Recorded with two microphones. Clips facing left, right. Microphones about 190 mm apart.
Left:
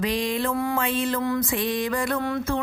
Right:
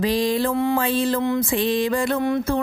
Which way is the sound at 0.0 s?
35° right (ahead or behind).